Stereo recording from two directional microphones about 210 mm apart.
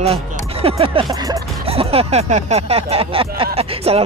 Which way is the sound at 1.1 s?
20° right (ahead or behind).